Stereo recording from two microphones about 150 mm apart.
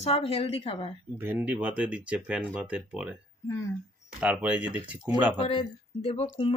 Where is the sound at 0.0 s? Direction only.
40° left (ahead or behind).